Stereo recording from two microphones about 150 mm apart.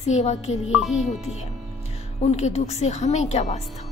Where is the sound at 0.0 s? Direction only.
50° left (ahead or behind).